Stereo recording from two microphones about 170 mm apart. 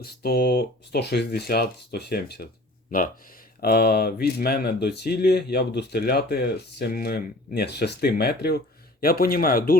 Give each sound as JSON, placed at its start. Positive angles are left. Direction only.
{"t": 0.0, "sound": "speech", "side_deg": 65}
{"t": 2.9, "sound": "speech", "side_deg": 55}